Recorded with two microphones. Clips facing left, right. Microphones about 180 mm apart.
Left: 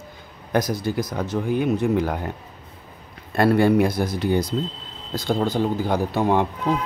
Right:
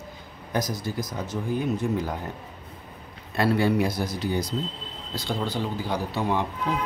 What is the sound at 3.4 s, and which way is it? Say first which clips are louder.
Speech: left 5 dB; 55° left (ahead or behind).